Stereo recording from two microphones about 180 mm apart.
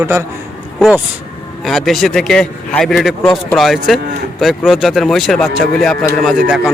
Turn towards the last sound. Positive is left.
turn(degrees=0)  # may be behind; listen again after turning